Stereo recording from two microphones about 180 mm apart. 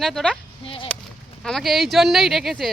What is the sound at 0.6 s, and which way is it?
Speech, 30° left (ahead or behind).